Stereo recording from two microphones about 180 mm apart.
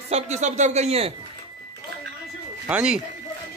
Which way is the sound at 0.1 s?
40° right (ahead or behind).